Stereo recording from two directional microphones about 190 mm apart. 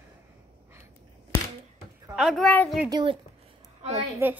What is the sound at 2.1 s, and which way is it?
Speech, centre (ahead or behind).